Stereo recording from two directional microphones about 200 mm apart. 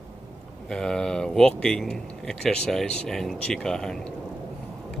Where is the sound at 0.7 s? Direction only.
5° left (ahead or behind).